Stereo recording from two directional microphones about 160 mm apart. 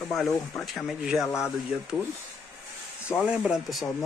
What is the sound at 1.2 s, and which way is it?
Speech, 15° left (ahead or behind).